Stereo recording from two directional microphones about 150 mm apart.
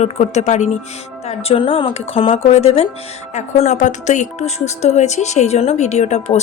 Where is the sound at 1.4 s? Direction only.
40° left (ahead or behind).